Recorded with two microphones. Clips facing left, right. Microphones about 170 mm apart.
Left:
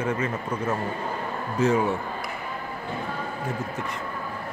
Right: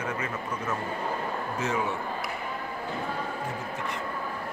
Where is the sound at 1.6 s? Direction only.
35° left (ahead or behind).